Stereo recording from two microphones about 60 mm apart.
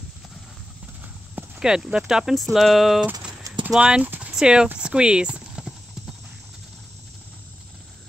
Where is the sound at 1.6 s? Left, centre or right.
Centre.